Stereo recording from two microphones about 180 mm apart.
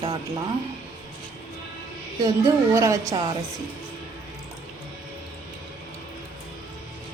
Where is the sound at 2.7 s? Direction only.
15° right (ahead or behind).